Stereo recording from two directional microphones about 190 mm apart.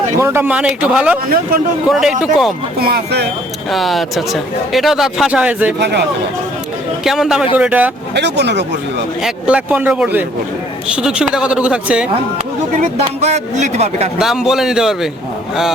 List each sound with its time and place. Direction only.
0.2 s speech: 10° right (ahead or behind)
2.7 s speech: 55° right (ahead or behind)
3.7 s speech: centre (ahead or behind)
5.8 s speech: 60° right (ahead or behind)
7.0 s a man's voice: centre (ahead or behind)
8.1 s speech: 65° right (ahead or behind)
9.2 s speech: 5° right (ahead or behind)
13.2 s a man's voice: 35° right (ahead or behind)
14.2 s speech: 5° right (ahead or behind)